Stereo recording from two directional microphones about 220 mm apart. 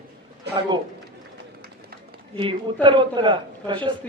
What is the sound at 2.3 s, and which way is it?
A man's voice, 25° right (ahead or behind).